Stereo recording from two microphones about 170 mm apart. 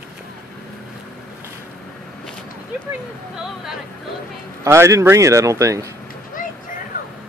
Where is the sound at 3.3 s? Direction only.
5° right (ahead or behind).